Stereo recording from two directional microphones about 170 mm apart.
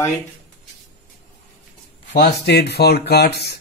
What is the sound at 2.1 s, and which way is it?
Speech, 80° left.